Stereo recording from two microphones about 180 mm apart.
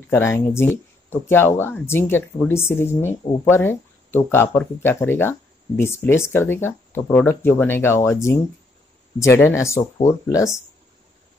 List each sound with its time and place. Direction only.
0.1 s speech: 15° left (ahead or behind)